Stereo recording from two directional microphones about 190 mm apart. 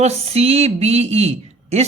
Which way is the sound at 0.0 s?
35° right (ahead or behind).